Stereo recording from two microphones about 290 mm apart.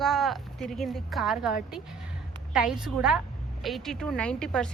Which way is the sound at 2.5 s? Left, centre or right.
Centre.